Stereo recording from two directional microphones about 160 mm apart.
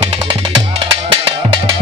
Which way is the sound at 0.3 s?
35° right (ahead or behind).